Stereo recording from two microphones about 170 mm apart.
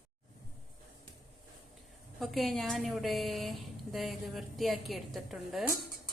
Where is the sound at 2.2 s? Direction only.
Centre (ahead or behind).